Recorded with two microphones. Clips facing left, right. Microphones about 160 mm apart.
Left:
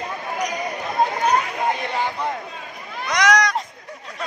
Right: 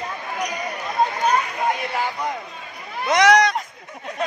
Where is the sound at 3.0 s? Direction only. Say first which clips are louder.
Right 4 dB; 25° right (ahead or behind).